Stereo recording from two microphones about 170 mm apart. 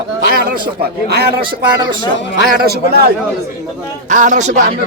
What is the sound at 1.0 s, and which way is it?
Speech, 70° right (ahead or behind).